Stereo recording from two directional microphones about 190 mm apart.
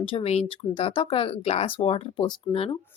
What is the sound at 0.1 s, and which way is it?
A woman's voice, 30° left (ahead or behind).